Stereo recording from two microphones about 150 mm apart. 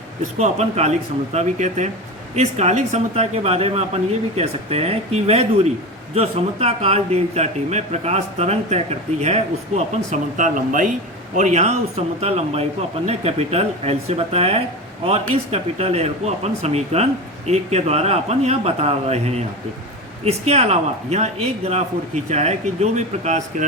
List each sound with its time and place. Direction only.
0.3 s speech: 45° right (ahead or behind); by 10.9 s 60° right (ahead or behind)
11.3 s speech: 50° right (ahead or behind)